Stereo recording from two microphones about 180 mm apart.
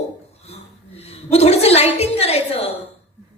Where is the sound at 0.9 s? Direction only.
35° left (ahead or behind).